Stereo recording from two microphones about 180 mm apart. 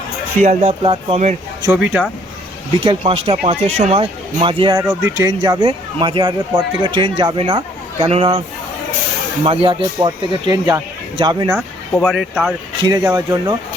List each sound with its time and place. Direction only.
0.4 s speech: 40° right (ahead or behind)
1.7 s speech: 10° right (ahead or behind)
2.8 s speech: 30° right (ahead or behind)
4.8 s speech: 15° right (ahead or behind); by 8.4 s 30° right (ahead or behind)
9.4 s speech: 30° right (ahead or behind)
12.8 s speech: 20° right (ahead or behind)